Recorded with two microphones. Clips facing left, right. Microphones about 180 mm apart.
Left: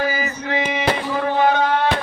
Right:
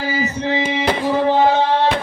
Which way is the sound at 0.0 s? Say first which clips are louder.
Right 2 dB; 30° right (ahead or behind).